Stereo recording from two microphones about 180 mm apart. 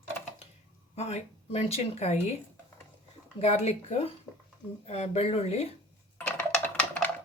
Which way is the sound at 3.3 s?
35° left (ahead or behind).